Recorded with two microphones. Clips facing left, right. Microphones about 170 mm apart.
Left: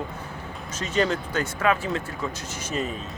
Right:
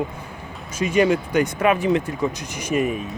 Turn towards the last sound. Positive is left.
turn(degrees=-10)  # may be behind; listen again after turning